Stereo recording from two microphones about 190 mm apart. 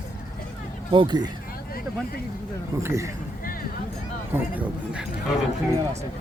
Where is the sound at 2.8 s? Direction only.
15° right (ahead or behind).